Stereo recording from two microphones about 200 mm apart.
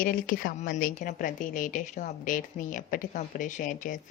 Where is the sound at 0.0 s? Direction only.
45° left (ahead or behind).